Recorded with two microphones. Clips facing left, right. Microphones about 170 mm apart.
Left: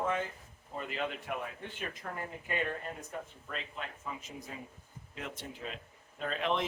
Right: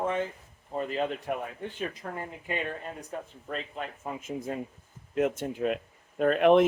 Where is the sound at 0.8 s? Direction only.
40° right (ahead or behind).